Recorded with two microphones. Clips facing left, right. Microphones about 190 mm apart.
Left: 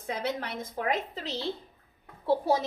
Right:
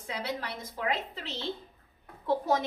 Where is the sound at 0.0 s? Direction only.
50° left (ahead or behind).